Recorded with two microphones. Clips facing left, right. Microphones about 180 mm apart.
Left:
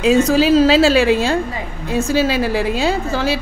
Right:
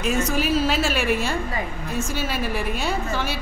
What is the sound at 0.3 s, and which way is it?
A woman's voice, 90° left.